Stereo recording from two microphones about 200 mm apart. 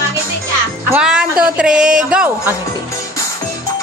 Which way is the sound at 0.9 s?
5° right (ahead or behind).